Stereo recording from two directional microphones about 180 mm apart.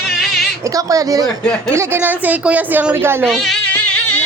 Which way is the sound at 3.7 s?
10° left (ahead or behind).